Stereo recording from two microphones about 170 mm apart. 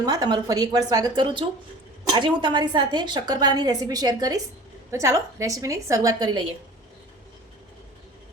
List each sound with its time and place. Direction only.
0.0 s a woman's voice: 20° right (ahead or behind)